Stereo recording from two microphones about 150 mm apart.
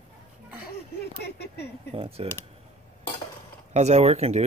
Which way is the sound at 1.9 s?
40° right (ahead or behind).